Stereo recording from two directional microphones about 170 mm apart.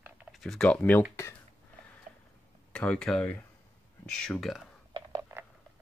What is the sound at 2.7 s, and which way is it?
Speech, 5° left (ahead or behind).